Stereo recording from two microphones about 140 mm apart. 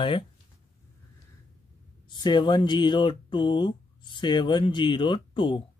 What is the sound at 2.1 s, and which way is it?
Speech, 30° left (ahead or behind).